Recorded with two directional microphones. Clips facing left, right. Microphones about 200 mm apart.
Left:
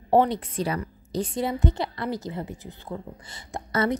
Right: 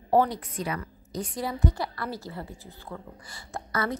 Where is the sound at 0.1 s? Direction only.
25° left (ahead or behind).